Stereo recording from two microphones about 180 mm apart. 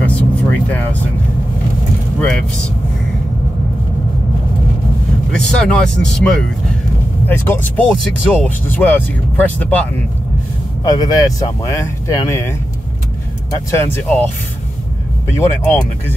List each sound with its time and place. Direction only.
0.0 s vehicle: 10° left (ahead or behind)
2.1 s speech: 5° left (ahead or behind)
5.3 s speech: 5° left (ahead or behind)
10.8 s speech: 20° left (ahead or behind)
15.3 s speech: 15° left (ahead or behind)